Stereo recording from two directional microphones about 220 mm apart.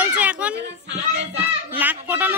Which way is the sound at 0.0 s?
5° right (ahead or behind).